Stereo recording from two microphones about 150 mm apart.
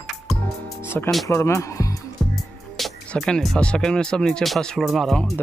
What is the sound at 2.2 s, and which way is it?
Music, centre (ahead or behind).